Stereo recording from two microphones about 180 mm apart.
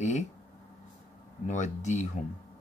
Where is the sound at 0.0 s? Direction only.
40° left (ahead or behind).